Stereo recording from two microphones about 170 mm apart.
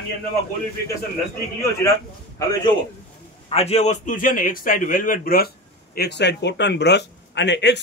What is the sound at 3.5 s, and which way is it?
A man's voice, 35° left (ahead or behind).